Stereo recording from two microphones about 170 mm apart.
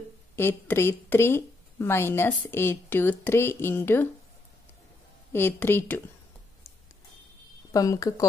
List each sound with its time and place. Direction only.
0.4 s a woman's voice: 15° left (ahead or behind)
5.3 s a woman's voice: 15° left (ahead or behind)
7.7 s speech: 20° left (ahead or behind)